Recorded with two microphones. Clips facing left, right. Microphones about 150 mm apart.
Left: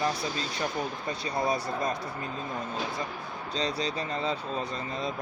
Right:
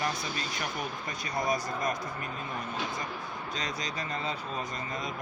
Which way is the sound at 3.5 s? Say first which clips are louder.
Left 8 dB; 30° left (ahead or behind).